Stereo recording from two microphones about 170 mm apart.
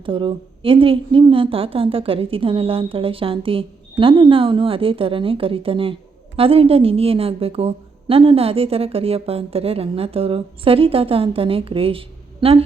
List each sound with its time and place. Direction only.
0.0 s a woman's voice: 30° right (ahead or behind)